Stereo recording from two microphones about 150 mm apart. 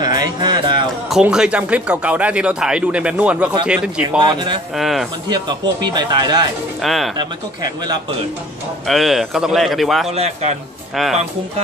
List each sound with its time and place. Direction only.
0.0 s a sound: 25° right (ahead or behind)
1.1 s speech: 5° right (ahead or behind)
4.2 s a man's voice: 30° right (ahead or behind)
4.7 s a man's voice: centre (ahead or behind)
5.3 s speech: 30° right (ahead or behind)
6.8 s speech: centre (ahead or behind)
7.2 s speech: 25° right (ahead or behind)
8.8 s a man's voice: centre (ahead or behind)
10.1 s a man's voice: 45° right (ahead or behind)